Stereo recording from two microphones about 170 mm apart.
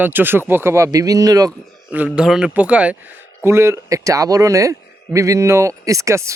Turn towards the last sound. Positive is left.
turn(degrees=-15)  # may be behind; listen again after turning